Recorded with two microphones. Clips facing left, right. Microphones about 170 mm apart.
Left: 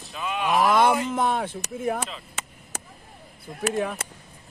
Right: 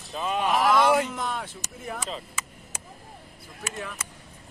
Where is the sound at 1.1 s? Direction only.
50° left (ahead or behind).